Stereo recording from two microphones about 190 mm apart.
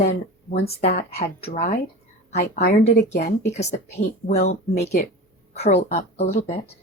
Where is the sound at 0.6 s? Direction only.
60° left (ahead or behind).